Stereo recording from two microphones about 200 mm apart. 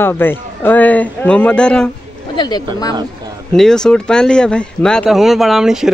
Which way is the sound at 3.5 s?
5° left (ahead or behind).